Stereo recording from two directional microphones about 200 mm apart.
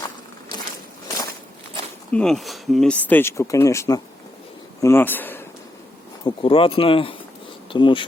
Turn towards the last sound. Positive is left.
turn(degrees=25)  # may be behind; listen again after turning